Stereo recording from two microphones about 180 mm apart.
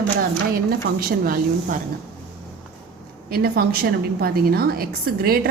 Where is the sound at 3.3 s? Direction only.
60° right (ahead or behind).